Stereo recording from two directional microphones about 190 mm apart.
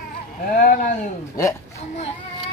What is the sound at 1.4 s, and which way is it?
Speech, 15° left (ahead or behind).